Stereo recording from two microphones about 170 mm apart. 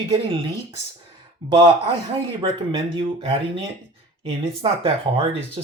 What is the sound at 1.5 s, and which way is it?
Speech, 30° right (ahead or behind).